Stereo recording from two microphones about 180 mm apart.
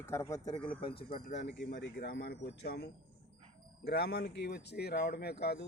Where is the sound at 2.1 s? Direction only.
60° left (ahead or behind).